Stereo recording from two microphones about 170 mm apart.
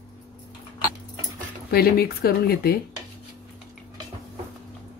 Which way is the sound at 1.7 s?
65° left (ahead or behind).